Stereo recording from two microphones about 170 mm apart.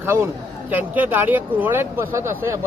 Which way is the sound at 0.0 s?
15° right (ahead or behind).